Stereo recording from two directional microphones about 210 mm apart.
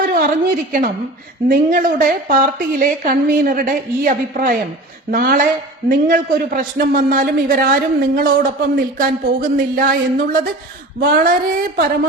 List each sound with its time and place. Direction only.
0.1 s a sound: 40° right (ahead or behind)
1.5 s a man's voice: 40° right (ahead or behind)
11.0 s speech: 45° right (ahead or behind)